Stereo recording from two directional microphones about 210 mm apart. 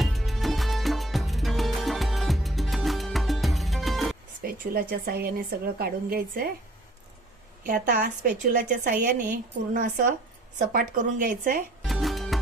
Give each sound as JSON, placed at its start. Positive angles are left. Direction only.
{"t": 0.0, "sound": "music", "side_deg": 0}
{"t": 4.4, "sound": "a woman's voice", "side_deg": -45}
{"t": 7.6, "sound": "a woman's voice", "side_deg": -40}
{"t": 11.8, "sound": "music", "side_deg": 0}